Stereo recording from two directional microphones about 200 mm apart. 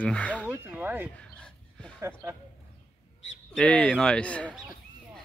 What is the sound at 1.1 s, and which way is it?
Dog, 5° left (ahead or behind).